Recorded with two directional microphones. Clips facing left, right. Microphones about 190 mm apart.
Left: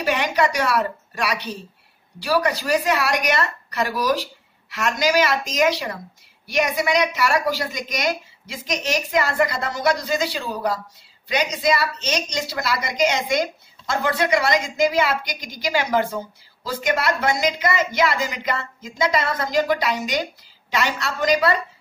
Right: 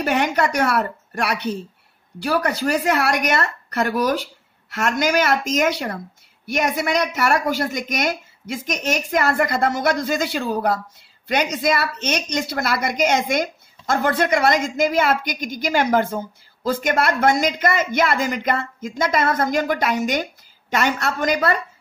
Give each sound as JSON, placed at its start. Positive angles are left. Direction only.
{"t": 0.0, "sound": "a woman's voice", "side_deg": -50}